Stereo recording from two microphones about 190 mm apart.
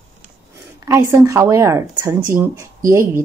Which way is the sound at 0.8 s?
15° right (ahead or behind).